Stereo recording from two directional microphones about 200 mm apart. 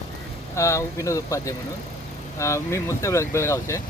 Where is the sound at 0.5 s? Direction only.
15° left (ahead or behind).